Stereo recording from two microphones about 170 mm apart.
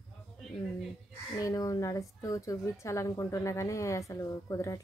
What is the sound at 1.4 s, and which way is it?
A woman's voice, 20° left (ahead or behind).